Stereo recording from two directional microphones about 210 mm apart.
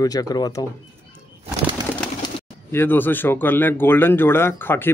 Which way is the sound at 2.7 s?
10° left (ahead or behind).